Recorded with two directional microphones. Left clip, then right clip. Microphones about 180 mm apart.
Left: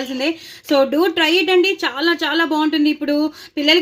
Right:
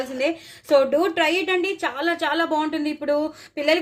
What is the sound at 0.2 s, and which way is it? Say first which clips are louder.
A woman's voice: left 1 dB; 45° left (ahead or behind).